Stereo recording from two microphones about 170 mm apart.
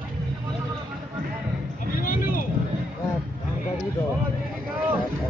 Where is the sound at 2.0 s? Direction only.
55° left (ahead or behind).